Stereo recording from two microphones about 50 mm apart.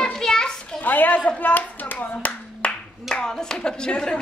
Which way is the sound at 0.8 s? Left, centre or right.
Left.